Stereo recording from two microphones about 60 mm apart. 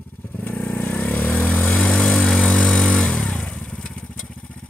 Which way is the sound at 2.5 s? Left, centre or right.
Centre.